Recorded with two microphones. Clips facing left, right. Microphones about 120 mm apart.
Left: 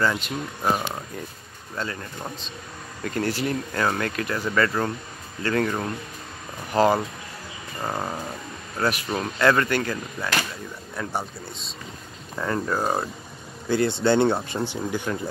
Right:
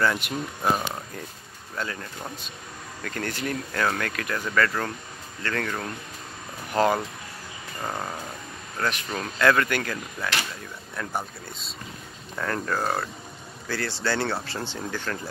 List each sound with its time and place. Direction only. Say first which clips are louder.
0.6 s speech: left 1 dB; 5° left (ahead or behind)
6.7 s speech: left 3 dB; 5° left (ahead or behind)
7.8 s speech: left 3 dB; 15° left (ahead or behind)